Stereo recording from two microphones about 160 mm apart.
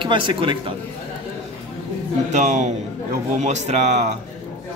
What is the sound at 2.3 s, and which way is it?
Speech, 50° right (ahead or behind).